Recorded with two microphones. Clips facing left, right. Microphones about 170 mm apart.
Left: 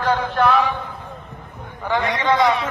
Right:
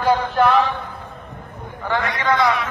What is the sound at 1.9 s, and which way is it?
Speech, 25° left (ahead or behind).